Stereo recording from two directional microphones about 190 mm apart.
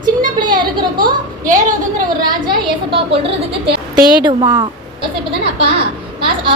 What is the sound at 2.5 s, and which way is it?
A woman's voice, 30° right (ahead or behind).